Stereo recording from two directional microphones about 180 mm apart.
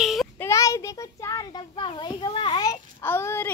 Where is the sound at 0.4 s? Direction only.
15° left (ahead or behind).